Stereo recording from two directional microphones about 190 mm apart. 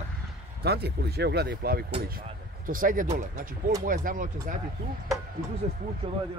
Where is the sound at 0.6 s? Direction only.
60° right (ahead or behind).